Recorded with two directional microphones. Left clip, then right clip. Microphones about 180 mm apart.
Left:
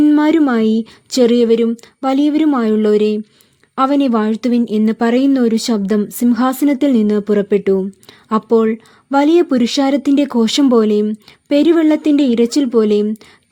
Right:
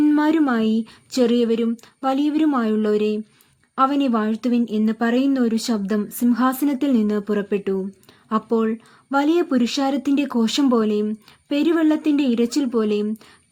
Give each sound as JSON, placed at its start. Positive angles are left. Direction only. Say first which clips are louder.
{"t": 0.0, "sound": "speech", "louder": "left 6 dB", "side_deg": 30}